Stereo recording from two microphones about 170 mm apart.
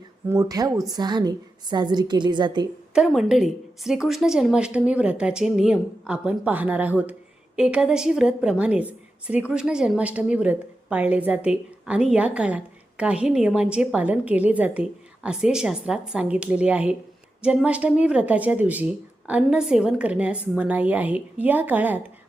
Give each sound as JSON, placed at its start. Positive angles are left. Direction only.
{"t": 0.3, "sound": "speech", "side_deg": -20}
{"t": 2.9, "sound": "a woman's voice", "side_deg": -5}